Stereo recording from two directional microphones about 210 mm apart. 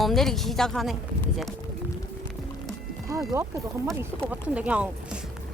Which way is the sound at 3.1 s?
15° right (ahead or behind).